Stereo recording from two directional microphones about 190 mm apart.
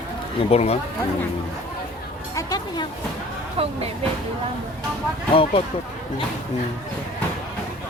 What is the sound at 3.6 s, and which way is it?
Speech, 30° right (ahead or behind).